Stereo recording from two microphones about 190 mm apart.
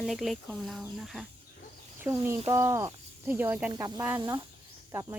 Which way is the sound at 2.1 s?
15° right (ahead or behind).